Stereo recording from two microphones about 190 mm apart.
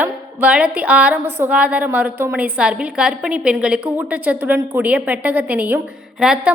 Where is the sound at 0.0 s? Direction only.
10° right (ahead or behind).